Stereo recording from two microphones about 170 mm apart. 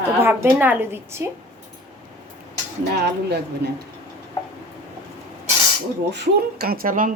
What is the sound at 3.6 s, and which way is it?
Speech, 75° right (ahead or behind).